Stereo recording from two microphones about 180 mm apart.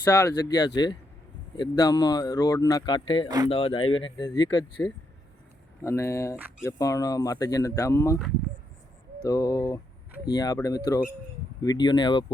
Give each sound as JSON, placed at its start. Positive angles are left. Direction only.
{"t": 0.1, "sound": "speech", "side_deg": 20}
{"t": 3.2, "sound": "speech", "side_deg": -20}
{"t": 3.5, "sound": "speech", "side_deg": 30}
{"t": 9.2, "sound": "speech", "side_deg": 20}